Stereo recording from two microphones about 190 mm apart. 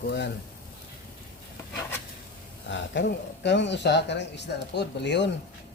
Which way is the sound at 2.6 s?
70° left (ahead or behind).